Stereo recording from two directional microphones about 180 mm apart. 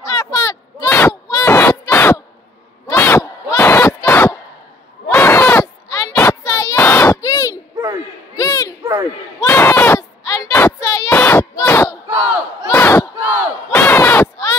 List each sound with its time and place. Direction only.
0.0 s a sound: 20° left (ahead or behind)
2.9 s battle cry: 15° left (ahead or behind)
5.1 s a sound: 10° left (ahead or behind)
12.1 s battle cry: 10° right (ahead or behind)
12.6 s crowd: 15° left (ahead or behind)
13.2 s crowd: 10° right (ahead or behind)
13.7 s battle cry: 10° left (ahead or behind)